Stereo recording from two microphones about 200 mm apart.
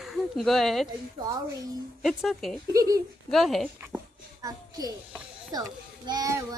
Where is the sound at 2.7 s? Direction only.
15° right (ahead or behind).